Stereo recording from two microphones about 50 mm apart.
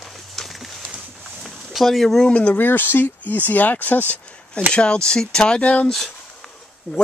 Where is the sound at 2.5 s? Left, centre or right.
Left.